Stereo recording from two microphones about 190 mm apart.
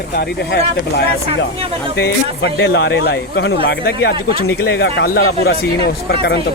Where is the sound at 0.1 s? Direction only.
60° left (ahead or behind).